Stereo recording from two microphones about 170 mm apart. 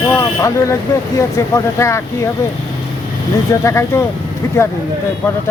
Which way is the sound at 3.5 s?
20° left (ahead or behind).